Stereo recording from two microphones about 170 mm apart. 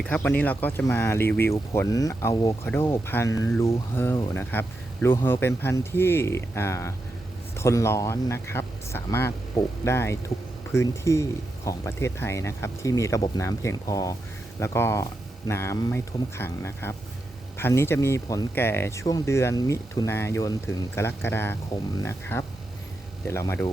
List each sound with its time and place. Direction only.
0.0 s speech: 10° left (ahead or behind)